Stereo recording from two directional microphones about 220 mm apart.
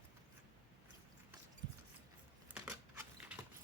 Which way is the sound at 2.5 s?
10° right (ahead or behind).